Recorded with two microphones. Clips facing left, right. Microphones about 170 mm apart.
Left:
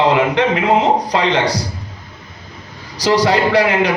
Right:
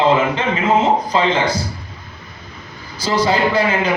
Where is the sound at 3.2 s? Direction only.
70° left (ahead or behind).